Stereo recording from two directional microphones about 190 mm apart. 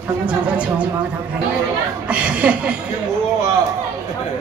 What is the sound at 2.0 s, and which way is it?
Speech, 5° right (ahead or behind).